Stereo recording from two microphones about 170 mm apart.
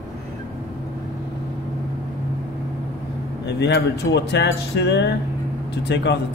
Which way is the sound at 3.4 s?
80° left.